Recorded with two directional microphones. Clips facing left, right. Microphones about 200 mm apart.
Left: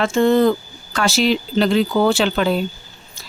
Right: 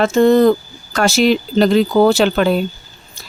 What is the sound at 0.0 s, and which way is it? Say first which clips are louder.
Speech: right 4 dB; 40° right (ahead or behind).